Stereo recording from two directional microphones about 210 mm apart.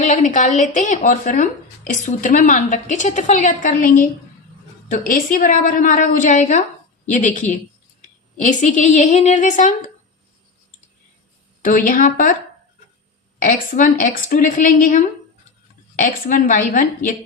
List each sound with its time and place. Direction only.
0.0 s speech: 35° left (ahead or behind)
11.6 s speech: 40° left (ahead or behind)
13.4 s speech: 40° left (ahead or behind)